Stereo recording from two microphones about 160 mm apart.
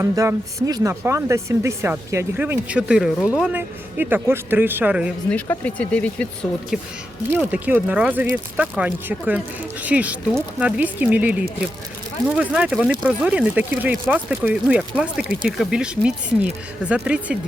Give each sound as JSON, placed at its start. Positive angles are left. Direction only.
{"t": 0.0, "sound": "speech", "side_deg": -20}
{"t": 5.3, "sound": "speech", "side_deg": 10}
{"t": 7.5, "sound": "speech", "side_deg": -10}